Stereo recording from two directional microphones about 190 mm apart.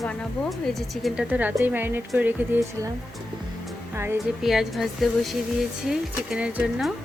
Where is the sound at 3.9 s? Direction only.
15° right (ahead or behind).